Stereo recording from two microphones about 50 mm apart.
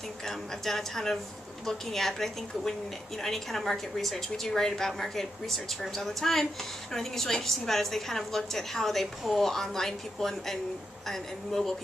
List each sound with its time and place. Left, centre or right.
0.2 s a woman's voice: centre